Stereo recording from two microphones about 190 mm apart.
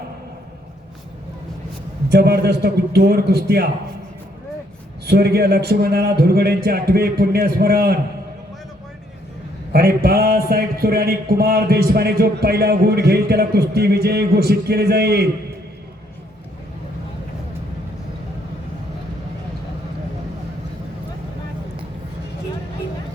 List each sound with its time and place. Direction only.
2.0 s a man's voice: 60° right (ahead or behind)
5.0 s a man's voice: 60° right (ahead or behind)
9.7 s a man's voice: 55° right (ahead or behind)